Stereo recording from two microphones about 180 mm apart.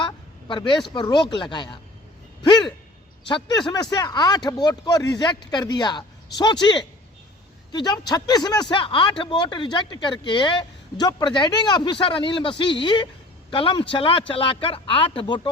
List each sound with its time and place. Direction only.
0.0 s speech: 25° left (ahead or behind)